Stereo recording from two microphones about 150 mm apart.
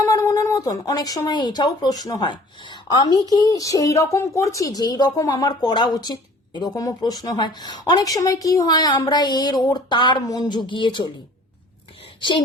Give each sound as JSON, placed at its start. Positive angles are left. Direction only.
{"t": 0.1, "sound": "speech", "side_deg": 20}